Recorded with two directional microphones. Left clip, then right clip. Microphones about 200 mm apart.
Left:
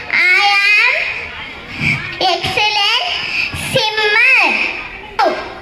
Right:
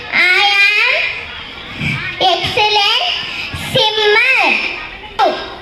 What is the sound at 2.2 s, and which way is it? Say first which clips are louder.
Music: right 2 dB; 45° right (ahead or behind).